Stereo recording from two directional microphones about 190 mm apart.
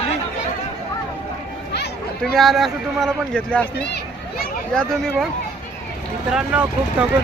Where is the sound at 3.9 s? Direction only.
50° left (ahead or behind).